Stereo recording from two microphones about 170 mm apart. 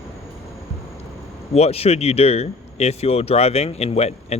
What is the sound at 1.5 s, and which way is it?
Speech, 35° left (ahead or behind).